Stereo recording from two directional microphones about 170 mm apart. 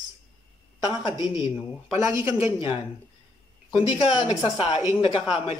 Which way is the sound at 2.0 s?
15° right (ahead or behind).